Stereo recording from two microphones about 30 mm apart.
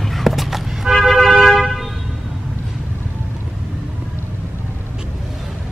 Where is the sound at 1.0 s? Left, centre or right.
Centre.